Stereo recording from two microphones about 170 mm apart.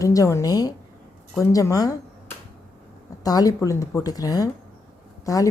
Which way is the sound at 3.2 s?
20° left (ahead or behind).